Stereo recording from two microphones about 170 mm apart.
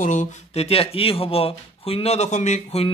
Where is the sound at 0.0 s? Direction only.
50° left (ahead or behind).